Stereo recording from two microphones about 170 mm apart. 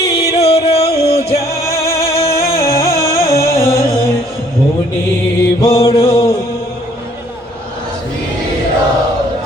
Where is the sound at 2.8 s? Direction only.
20° right (ahead or behind).